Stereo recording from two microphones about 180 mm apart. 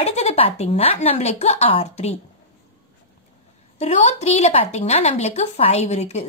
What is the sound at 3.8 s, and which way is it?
Speech, 35° left (ahead or behind).